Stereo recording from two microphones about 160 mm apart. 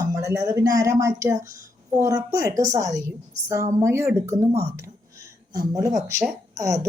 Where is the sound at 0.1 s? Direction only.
20° right (ahead or behind).